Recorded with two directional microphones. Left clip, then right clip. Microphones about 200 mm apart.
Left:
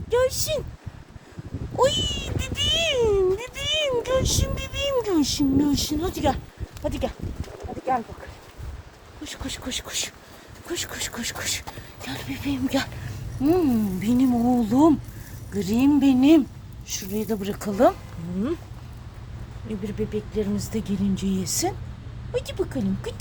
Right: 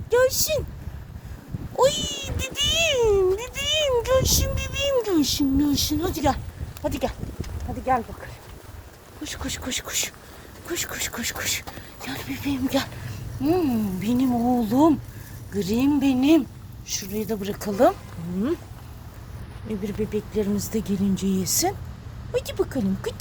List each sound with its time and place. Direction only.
0.1 s speech: centre (ahead or behind)
1.7 s cat: 5° left (ahead or behind)
6.8 s speech: 10° right (ahead or behind)
9.2 s speech: 10° right (ahead or behind); by 17.9 s 15° left (ahead or behind)
19.8 s speech: 10° right (ahead or behind)